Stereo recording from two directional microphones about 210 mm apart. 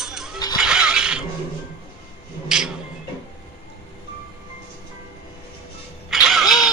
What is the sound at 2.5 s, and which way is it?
Music, 5° right (ahead or behind).